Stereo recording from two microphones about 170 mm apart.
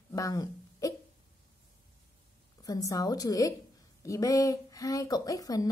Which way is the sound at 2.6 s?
20° left (ahead or behind).